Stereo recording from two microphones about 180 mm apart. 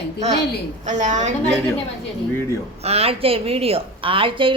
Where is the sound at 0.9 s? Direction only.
40° right (ahead or behind).